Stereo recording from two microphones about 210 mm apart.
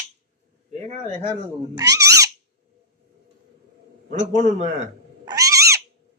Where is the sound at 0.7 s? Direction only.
35° right (ahead or behind).